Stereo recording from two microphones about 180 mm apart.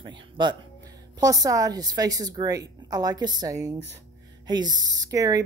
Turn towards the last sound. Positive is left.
turn(degrees=-20)  # may be behind; listen again after turning